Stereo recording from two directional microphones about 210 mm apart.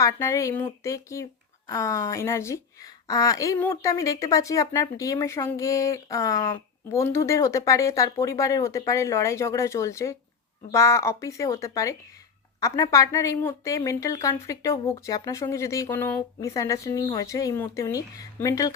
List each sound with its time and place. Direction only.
0.0 s speech: 15° left (ahead or behind)